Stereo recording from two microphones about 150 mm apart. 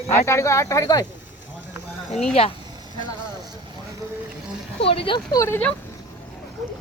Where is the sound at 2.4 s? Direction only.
40° left (ahead or behind).